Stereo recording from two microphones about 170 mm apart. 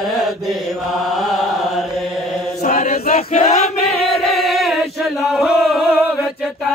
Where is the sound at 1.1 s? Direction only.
Centre (ahead or behind).